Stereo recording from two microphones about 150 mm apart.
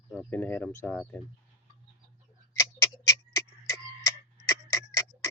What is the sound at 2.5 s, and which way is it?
Tick-tock, 20° left (ahead or behind).